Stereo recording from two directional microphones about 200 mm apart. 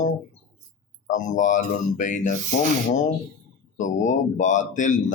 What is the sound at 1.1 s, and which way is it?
Speech, 40° left (ahead or behind).